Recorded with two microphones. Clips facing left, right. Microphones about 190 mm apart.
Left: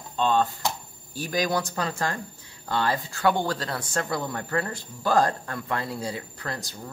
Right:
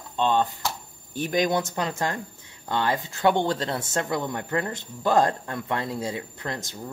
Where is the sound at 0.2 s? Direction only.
20° right (ahead or behind).